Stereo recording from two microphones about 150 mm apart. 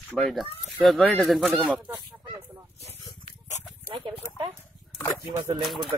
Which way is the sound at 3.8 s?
40° right (ahead or behind).